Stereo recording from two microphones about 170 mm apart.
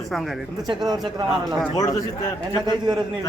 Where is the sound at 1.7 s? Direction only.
20° left (ahead or behind).